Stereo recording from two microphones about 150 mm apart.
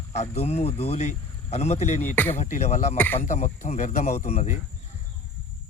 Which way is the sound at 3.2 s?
50° left (ahead or behind).